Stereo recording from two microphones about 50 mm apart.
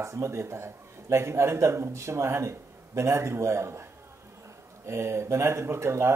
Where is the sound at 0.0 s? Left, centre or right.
Right.